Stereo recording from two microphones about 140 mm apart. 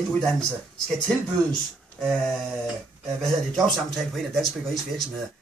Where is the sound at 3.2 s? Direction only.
Centre (ahead or behind).